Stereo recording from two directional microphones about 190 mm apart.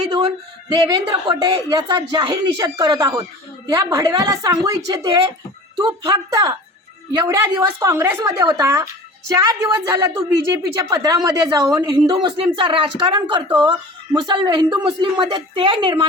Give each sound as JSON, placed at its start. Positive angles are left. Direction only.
{"t": 0.7, "sound": "a woman's voice", "side_deg": -20}